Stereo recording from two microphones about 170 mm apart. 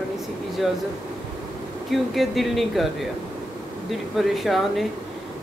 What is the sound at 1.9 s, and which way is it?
Speech, centre (ahead or behind).